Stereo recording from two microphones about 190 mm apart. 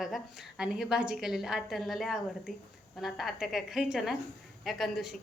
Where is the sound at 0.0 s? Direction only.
Centre (ahead or behind).